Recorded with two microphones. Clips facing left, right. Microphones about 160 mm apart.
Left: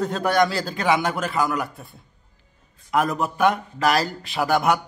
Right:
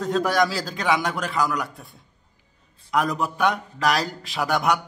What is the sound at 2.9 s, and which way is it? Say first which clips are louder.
A man's voice: left 1 dB; centre (ahead or behind).